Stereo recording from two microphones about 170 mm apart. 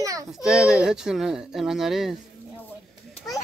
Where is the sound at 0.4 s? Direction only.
Centre (ahead or behind).